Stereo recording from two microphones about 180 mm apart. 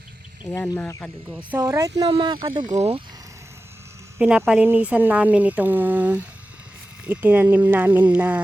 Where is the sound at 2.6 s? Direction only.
35° right (ahead or behind).